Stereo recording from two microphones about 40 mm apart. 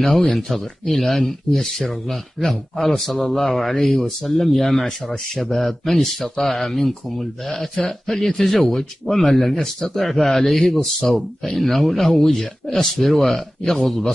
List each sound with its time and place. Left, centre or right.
0.0 s speech: centre